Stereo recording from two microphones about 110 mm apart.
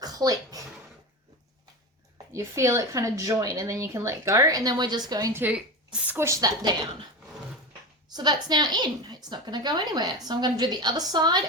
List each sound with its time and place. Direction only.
0.0 s speech: 35° right (ahead or behind)
2.3 s a woman's voice: 25° right (ahead or behind)
5.3 s speech: 15° right (ahead or behind)
6.1 s a woman's voice: 25° right (ahead or behind)
8.1 s a woman's voice: 40° right (ahead or behind)